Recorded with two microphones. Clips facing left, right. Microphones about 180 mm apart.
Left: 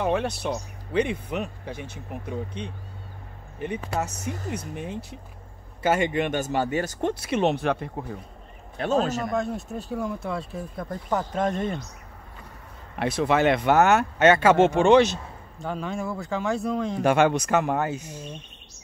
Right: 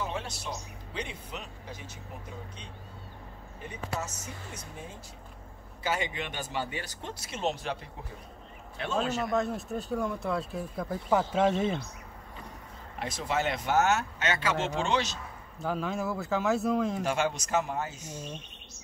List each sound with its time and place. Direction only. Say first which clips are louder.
0.0 s speech: left 11 dB; 60° left (ahead or behind)
5.8 s speech: left 9 dB; 55° left (ahead or behind)
8.7 s speech: left 7 dB; 40° left (ahead or behind)
9.3 s speech: left 2 dB; centre (ahead or behind)
13.0 s speech: left 9 dB; 65° left (ahead or behind)
15.6 s speech: left 1 dB; 5° right (ahead or behind)
17.0 s speech: left 9 dB; 60° left (ahead or behind)